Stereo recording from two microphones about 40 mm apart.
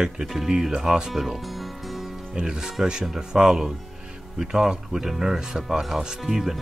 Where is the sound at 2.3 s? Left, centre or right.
Centre.